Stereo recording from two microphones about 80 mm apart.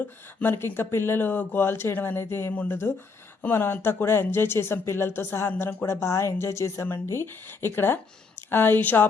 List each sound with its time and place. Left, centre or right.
0.0 s speech: left
2.5 s a woman's voice: left